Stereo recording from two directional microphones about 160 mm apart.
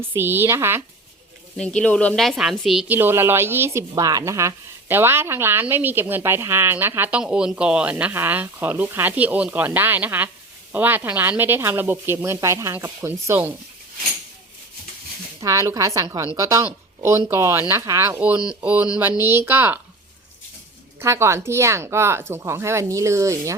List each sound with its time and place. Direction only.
0.1 s speech: 15° right (ahead or behind)
1.5 s speech: 5° left (ahead or behind); by 13.5 s 15° right (ahead or behind)
15.4 s a woman's voice: 20° right (ahead or behind)
21.0 s speech: 15° right (ahead or behind)